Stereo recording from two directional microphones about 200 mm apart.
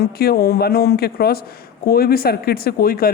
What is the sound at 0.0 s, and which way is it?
Speech, 50° left (ahead or behind).